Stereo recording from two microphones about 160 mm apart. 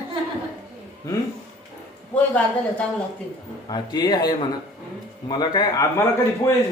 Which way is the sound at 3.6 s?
25° left (ahead or behind).